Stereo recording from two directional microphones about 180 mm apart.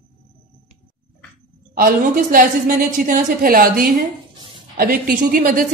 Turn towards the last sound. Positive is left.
turn(degrees=-50)  # may be behind; listen again after turning